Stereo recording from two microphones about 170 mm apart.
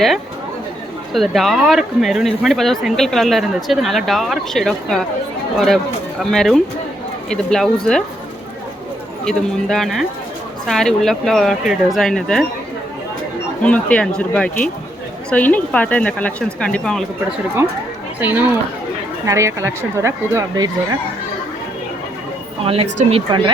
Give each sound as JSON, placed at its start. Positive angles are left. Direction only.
{"t": 1.1, "sound": "speech", "side_deg": 0}
{"t": 9.2, "sound": "speech", "side_deg": 0}
{"t": 13.6, "sound": "speech", "side_deg": 5}
{"t": 18.2, "sound": "speech", "side_deg": -10}
{"t": 22.6, "sound": "speech", "side_deg": -35}